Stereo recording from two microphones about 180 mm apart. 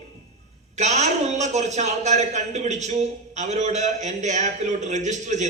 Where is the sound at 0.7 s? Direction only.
40° right (ahead or behind).